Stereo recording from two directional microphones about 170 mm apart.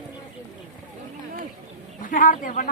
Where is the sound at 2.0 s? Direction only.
50° left (ahead or behind).